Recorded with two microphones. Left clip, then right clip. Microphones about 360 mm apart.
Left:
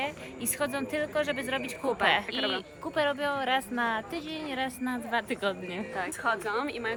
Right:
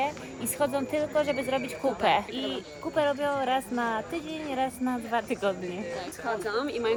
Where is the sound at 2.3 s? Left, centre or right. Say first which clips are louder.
Left 3 dB; centre.